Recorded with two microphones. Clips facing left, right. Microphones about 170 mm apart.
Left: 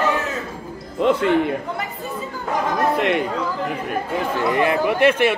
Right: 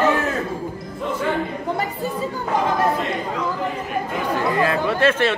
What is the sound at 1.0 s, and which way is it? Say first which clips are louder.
Speech: left 6 dB; 75° left (ahead or behind).